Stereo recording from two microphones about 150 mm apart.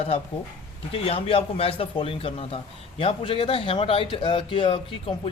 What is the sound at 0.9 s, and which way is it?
Speech, 40° left (ahead or behind).